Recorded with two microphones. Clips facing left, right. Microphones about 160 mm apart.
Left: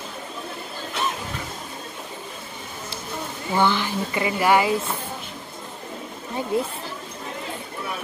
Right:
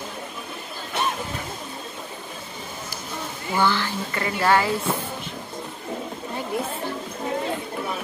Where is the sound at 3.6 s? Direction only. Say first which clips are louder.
Left 1 dB; 15° left (ahead or behind).